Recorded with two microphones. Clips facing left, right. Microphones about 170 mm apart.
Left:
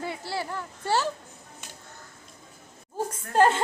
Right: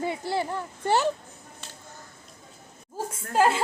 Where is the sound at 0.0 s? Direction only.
20° right (ahead or behind).